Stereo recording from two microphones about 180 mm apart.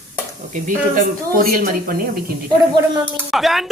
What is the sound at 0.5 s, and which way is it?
Speech, 50° right (ahead or behind).